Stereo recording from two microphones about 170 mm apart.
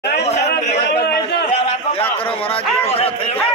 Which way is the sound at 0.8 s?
70° left (ahead or behind).